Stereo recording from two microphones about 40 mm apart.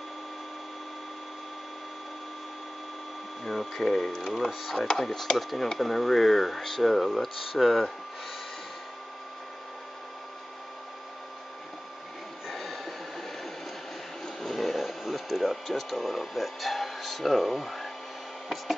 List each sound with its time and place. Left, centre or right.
3.4 s speech: centre
12.4 s a sound: centre
14.2 s speech: centre